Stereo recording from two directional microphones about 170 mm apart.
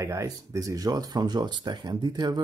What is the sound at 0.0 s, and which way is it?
Speech, 20° right (ahead or behind).